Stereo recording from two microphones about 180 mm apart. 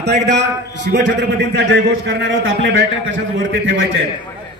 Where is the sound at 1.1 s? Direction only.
80° right.